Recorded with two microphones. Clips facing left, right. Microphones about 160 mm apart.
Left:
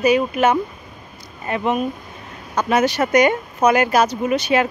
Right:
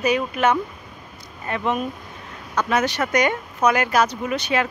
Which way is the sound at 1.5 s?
5° left (ahead or behind).